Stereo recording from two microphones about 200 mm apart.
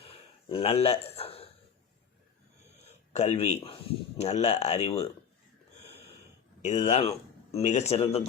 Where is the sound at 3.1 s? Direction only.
35° left (ahead or behind).